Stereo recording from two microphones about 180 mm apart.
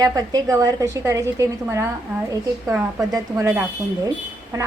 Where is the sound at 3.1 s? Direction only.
20° right (ahead or behind).